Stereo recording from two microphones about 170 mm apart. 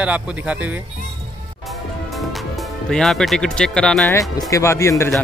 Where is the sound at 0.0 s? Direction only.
5° right (ahead or behind).